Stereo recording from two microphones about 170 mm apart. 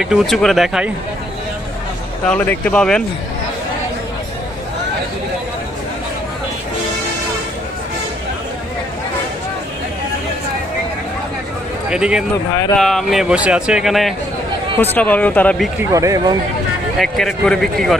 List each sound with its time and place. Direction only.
0.0 s speech: 5° right (ahead or behind)
2.2 s speech: 10° left (ahead or behind)
11.9 s speech: 5° right (ahead or behind)
14.8 s speech: 10° left (ahead or behind)
15.8 s speech: 20° right (ahead or behind)
17.0 s speech: centre (ahead or behind)